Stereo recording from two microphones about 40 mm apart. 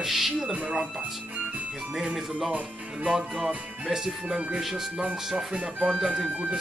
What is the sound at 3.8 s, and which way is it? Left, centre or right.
Speech, centre.